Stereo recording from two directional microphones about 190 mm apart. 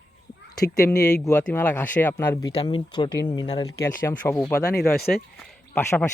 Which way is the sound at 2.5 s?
25° left (ahead or behind).